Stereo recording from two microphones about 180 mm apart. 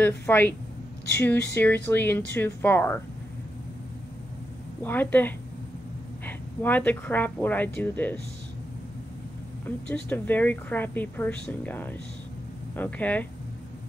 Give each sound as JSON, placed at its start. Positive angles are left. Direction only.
{"t": 0.0, "sound": "speech", "side_deg": 10}
{"t": 4.8, "sound": "speech", "side_deg": 10}
{"t": 9.7, "sound": "speech", "side_deg": 10}